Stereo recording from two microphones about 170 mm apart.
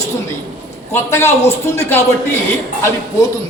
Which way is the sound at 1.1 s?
15° left (ahead or behind).